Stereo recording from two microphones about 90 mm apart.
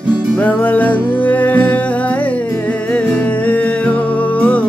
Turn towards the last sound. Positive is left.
turn(degrees=15)  # may be behind; listen again after turning